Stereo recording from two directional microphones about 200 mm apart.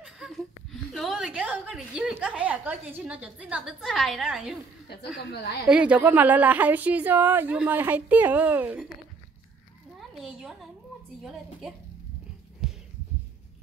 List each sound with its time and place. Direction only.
0.0 s a sound: centre (ahead or behind)
0.9 s a woman's voice: centre (ahead or behind)
4.8 s speech: 55° left (ahead or behind)
5.7 s a woman's voice: 5° right (ahead or behind)
9.9 s a child's voice: centre (ahead or behind)
12.6 s heart sounds: centre (ahead or behind)